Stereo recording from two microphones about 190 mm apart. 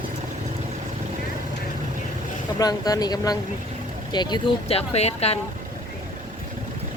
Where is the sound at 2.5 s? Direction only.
20° left (ahead or behind).